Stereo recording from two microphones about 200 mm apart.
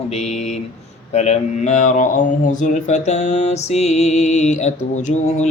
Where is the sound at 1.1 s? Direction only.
35° left (ahead or behind).